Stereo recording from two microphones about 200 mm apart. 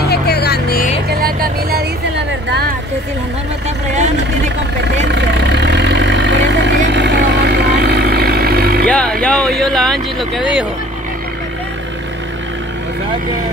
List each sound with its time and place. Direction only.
0.0 s music: 55° left (ahead or behind)
1.2 s vehicle: 50° right (ahead or behind)
4.9 s vehicle: 60° right (ahead or behind)
8.8 s vehicle: 5° left (ahead or behind)